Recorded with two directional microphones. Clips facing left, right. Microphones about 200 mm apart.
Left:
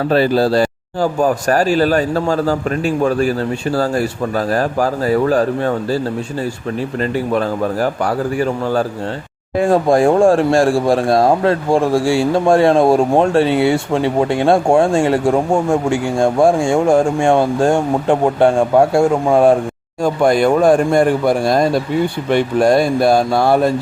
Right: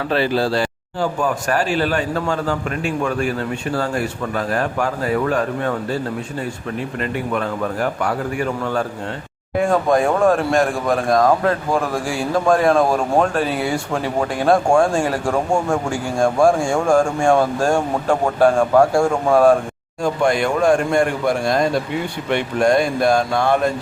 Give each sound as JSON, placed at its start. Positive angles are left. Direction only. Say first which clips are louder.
{"t": 0.1, "sound": "speech", "louder": "left 5 dB", "side_deg": 40}
{"t": 7.3, "sound": "speech", "louder": "left 4 dB", "side_deg": 35}
{"t": 20.2, "sound": "speech", "louder": "left 5 dB", "side_deg": 40}